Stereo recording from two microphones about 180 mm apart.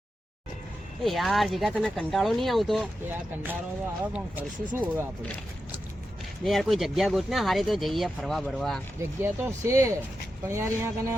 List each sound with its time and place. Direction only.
1.0 s speech: centre (ahead or behind)
3.1 s speech: 10° right (ahead or behind)
6.4 s speech: centre (ahead or behind)
9.0 s speech: 15° right (ahead or behind)